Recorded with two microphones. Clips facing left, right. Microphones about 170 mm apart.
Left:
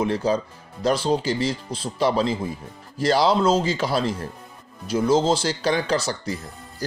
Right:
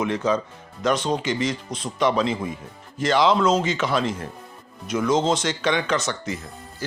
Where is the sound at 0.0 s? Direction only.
35° left (ahead or behind).